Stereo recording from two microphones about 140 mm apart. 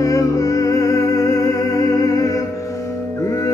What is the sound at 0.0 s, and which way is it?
Music, 25° left (ahead or behind).